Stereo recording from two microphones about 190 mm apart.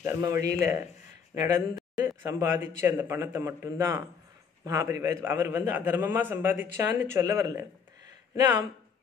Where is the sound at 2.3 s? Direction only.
15° right (ahead or behind).